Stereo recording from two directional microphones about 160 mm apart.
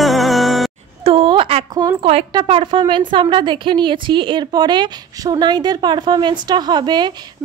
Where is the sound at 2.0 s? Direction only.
40° right (ahead or behind).